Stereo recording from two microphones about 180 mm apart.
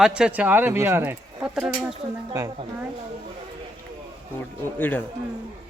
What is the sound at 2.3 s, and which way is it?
Speech, 15° right (ahead or behind).